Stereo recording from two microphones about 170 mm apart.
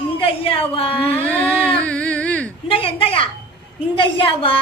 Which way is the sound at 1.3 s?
10° left (ahead or behind).